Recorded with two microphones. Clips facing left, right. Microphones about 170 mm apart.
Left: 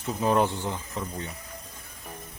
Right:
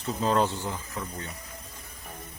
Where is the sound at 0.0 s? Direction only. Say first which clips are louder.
Left 1 dB; 15° left (ahead or behind).